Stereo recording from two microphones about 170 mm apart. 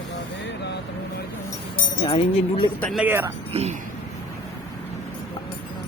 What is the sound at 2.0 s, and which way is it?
Speech, 30° left (ahead or behind).